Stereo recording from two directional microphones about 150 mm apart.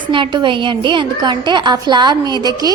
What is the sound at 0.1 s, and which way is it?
A woman's voice, 30° right (ahead or behind).